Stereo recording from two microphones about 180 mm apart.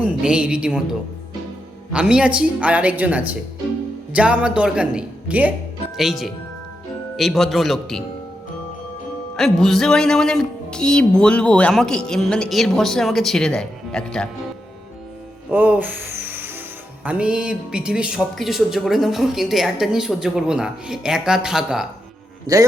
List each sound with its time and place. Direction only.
0.0 s speech: 5° right (ahead or behind)
1.9 s speech: 5° right (ahead or behind)
9.3 s speech: 5° left (ahead or behind)
15.4 s speech: 10° right (ahead or behind)